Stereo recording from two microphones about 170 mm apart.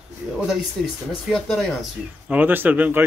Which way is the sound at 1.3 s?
Centre (ahead or behind).